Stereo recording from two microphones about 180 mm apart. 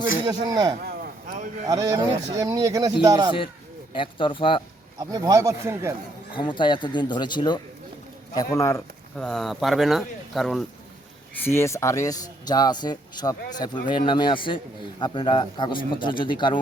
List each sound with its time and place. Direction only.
0.3 s speech: 20° right (ahead or behind)
0.9 s a sound: 50° right (ahead or behind)
1.6 s speech: 20° right (ahead or behind)
3.9 s a man's voice: 30° left (ahead or behind)
4.9 s speech: 20° right (ahead or behind)
6.3 s a man's voice: 25° left (ahead or behind)
9.1 s speech: 5° left (ahead or behind)
11.4 s a man's voice: 15° left (ahead or behind)